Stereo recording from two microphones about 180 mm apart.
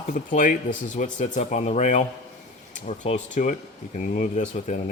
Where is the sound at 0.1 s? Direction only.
50° left (ahead or behind).